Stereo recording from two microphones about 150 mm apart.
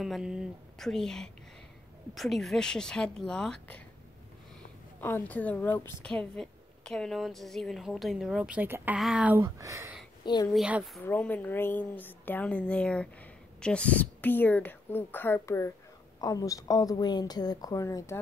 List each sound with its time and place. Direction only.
0.0 s speech: centre (ahead or behind)
5.0 s speech: 15° left (ahead or behind); by 9.4 s 5° right (ahead or behind)
9.4 s speech: 20° right (ahead or behind)
10.2 s a woman's voice: 30° left (ahead or behind)
10.5 s speech: 5° right (ahead or behind)
11.1 s a woman's voice: 10° left (ahead or behind)